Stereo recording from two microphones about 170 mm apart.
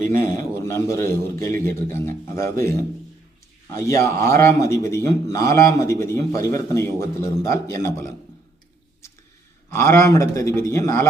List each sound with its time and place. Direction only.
0.2 s a man's voice: 15° left (ahead or behind)
9.7 s a man's voice: 15° left (ahead or behind)